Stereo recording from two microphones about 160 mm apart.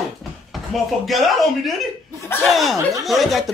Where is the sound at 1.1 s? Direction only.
Centre (ahead or behind).